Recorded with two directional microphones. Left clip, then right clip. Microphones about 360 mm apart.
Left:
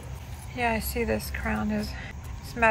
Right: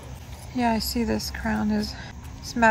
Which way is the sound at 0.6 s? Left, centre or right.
Centre.